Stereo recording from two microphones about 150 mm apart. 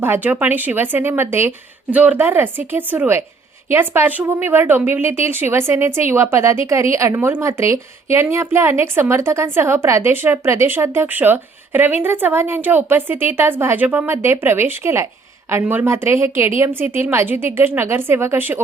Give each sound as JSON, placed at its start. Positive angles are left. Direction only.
{"t": 0.0, "sound": "a woman's voice", "side_deg": -15}